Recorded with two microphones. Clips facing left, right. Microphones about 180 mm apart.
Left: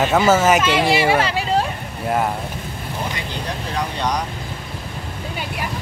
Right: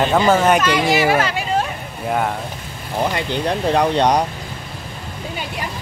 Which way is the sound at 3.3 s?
65° right (ahead or behind).